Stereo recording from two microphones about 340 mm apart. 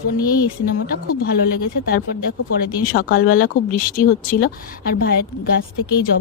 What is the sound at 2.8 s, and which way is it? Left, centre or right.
Speech, left.